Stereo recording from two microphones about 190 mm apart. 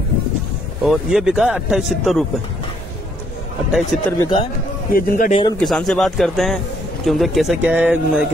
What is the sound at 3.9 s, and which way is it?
Speech, centre (ahead or behind).